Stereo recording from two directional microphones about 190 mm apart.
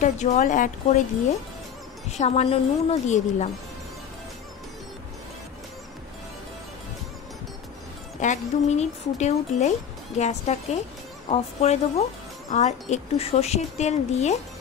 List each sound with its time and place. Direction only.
0.0 s speech: 40° left (ahead or behind)
2.0 s speech: 35° left (ahead or behind)
8.2 s speech: 40° left (ahead or behind)